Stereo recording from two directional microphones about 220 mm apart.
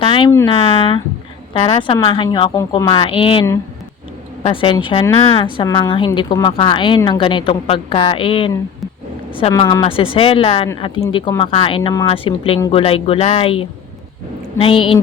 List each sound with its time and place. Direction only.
0.0 s speech: 25° left (ahead or behind)
0.3 s speech: 15° left (ahead or behind)
0.5 s a woman's voice: 25° left (ahead or behind)
4.4 s a woman's voice: 25° left (ahead or behind)